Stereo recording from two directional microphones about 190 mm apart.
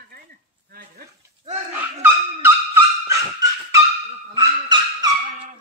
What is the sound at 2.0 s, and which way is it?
Dog, 10° right (ahead or behind).